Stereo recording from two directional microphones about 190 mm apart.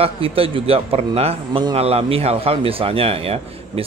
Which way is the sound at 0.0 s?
30° right (ahead or behind).